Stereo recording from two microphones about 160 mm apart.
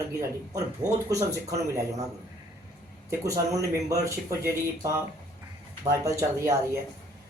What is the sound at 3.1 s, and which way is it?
Speech, 20° right (ahead or behind).